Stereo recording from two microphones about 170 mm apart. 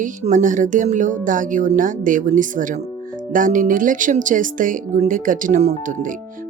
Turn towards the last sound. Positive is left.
turn(degrees=-45)  # may be behind; listen again after turning